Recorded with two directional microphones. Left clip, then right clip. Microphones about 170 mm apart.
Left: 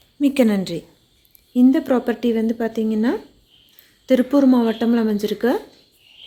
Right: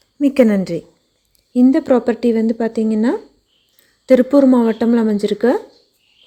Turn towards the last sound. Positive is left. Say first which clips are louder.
# right 5 dB
turn(degrees=-25)  # may be behind; listen again after turning